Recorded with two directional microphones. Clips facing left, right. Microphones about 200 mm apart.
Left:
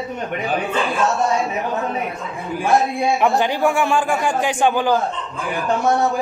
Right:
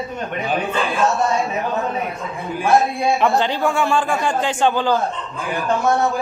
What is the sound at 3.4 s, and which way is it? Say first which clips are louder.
Speech: left 1 dB; 15° left (ahead or behind).